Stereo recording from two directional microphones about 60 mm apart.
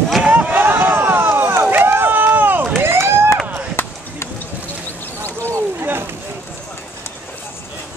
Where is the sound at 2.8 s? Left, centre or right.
Right.